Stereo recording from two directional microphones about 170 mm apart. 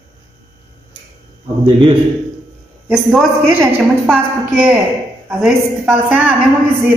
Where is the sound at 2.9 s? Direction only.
Centre (ahead or behind).